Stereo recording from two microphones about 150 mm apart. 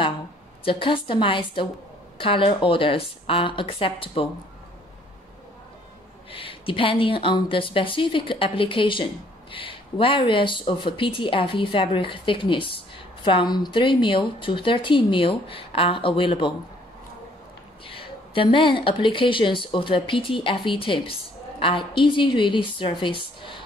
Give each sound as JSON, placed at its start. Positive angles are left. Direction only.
{"t": 0.7, "sound": "speech", "side_deg": 35}
{"t": 6.3, "sound": "speech", "side_deg": 35}
{"t": 17.8, "sound": "speech", "side_deg": 35}